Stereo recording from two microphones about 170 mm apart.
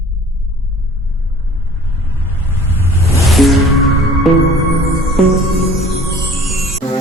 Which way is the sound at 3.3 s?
Centre (ahead or behind).